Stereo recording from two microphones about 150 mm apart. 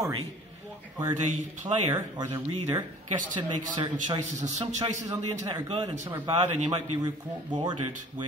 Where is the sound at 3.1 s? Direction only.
30° right (ahead or behind).